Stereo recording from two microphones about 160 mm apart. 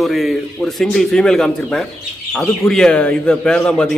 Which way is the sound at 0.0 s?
Centre (ahead or behind).